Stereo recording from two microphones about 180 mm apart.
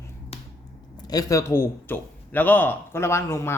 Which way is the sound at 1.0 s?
20° left (ahead or behind).